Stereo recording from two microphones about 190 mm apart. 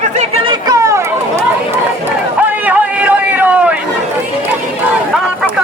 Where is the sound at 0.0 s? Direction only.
35° right (ahead or behind).